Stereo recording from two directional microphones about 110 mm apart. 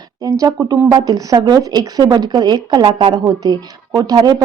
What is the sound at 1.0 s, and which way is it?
Speech, 35° right (ahead or behind).